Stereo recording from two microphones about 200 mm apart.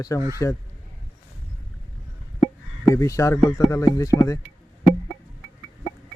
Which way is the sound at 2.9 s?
15° left (ahead or behind).